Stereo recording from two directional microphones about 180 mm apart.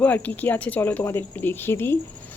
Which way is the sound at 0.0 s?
10° left (ahead or behind).